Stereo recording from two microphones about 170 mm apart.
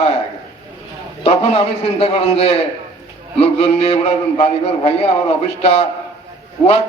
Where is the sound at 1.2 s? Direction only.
35° left (ahead or behind).